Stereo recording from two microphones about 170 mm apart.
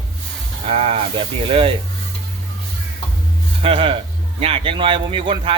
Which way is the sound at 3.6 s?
35° right (ahead or behind).